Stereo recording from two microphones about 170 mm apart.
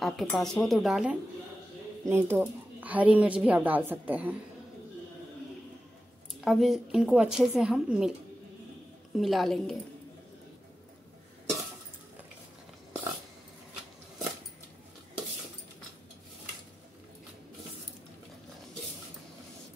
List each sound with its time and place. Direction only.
0.0 s a woman's voice: centre (ahead or behind)
2.0 s a woman's voice: 15° right (ahead or behind)
6.4 s a woman's voice: centre (ahead or behind)
9.1 s a woman's voice: centre (ahead or behind)